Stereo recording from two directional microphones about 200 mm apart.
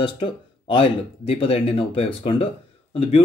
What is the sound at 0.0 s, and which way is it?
Speech, 25° left (ahead or behind).